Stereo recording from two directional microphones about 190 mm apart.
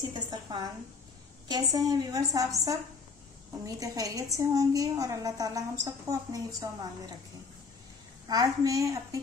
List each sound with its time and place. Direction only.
0.0 s a woman's voice: 20° right (ahead or behind)
8.3 s a woman's voice: 20° right (ahead or behind)